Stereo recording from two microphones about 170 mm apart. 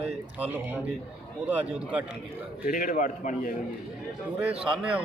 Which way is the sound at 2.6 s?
50° left (ahead or behind).